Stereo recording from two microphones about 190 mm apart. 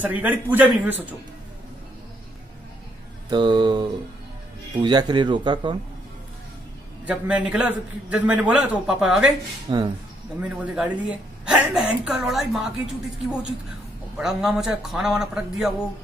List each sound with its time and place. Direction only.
0.0 s a man's voice: 10° right (ahead or behind)
3.3 s speech: 25° right (ahead or behind)
7.1 s a man's voice: 5° right (ahead or behind)
9.7 s speech: 25° right (ahead or behind)
10.4 s a woman's voice: 5° right (ahead or behind)